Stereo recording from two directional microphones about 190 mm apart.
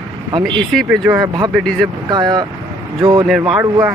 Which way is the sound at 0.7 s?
Centre (ahead or behind).